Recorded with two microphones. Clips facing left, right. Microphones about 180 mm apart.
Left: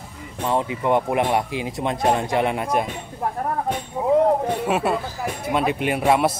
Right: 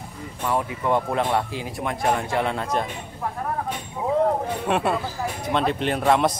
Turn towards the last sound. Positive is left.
turn(degrees=10)  # may be behind; listen again after turning